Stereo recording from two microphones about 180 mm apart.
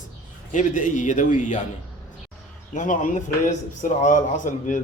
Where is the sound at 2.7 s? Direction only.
45° left (ahead or behind).